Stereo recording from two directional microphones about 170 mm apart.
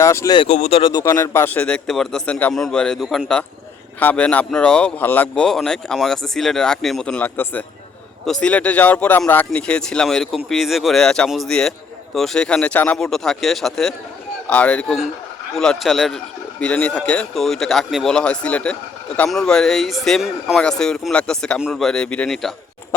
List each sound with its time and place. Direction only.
0.0 s speech: 15° left (ahead or behind)
0.4 s speech: 40° left (ahead or behind)
1.0 s speech: 15° left (ahead or behind)